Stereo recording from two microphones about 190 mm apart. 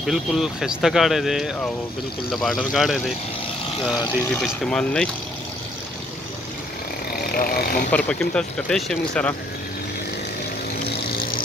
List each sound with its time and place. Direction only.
0.0 s speech: centre (ahead or behind)
4.4 s speech: 5° left (ahead or behind)
7.1 s vehicle: 50° left (ahead or behind)
7.9 s speech: 5° left (ahead or behind)
11.1 s vehicle: 50° left (ahead or behind)